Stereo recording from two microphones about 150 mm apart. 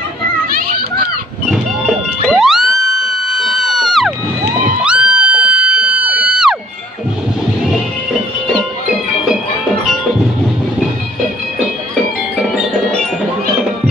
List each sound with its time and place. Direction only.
0.5 s children playing: 80° right
1.5 s music: 5° right (ahead or behind)
12.4 s music: centre (ahead or behind)